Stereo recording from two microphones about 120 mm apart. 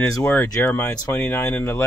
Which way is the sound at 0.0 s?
15° left (ahead or behind).